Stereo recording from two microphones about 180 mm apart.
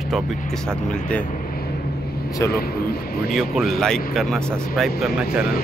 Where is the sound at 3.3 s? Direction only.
Centre (ahead or behind).